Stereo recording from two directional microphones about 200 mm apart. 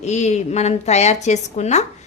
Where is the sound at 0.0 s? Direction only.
35° left (ahead or behind).